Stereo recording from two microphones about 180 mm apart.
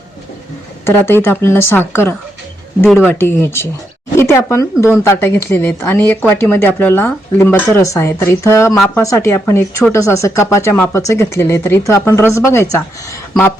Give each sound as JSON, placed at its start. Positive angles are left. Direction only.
{"t": 0.9, "sound": "speech", "side_deg": 15}